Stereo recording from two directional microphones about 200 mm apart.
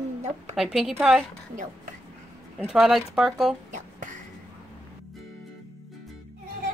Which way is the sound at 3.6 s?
40° right (ahead or behind).